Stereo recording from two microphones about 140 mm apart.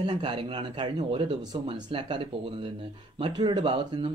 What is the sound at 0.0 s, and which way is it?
Speech, 35° right (ahead or behind).